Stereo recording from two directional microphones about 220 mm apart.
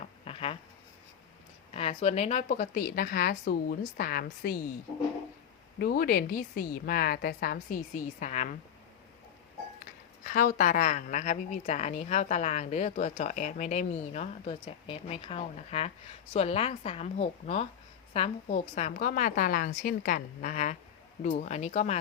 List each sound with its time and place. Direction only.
0.3 s a sound: 25° left (ahead or behind)
1.7 s a woman's voice: 25° left (ahead or behind)
5.8 s a woman's voice: 40° left (ahead or behind)
10.2 s a woman's voice: 40° left (ahead or behind)